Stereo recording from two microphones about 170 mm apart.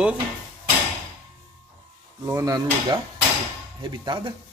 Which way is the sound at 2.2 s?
20° right (ahead or behind).